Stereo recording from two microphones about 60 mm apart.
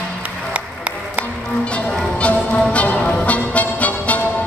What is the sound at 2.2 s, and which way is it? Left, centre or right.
Music, left.